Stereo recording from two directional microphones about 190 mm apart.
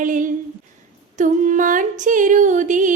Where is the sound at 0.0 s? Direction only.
45° right (ahead or behind).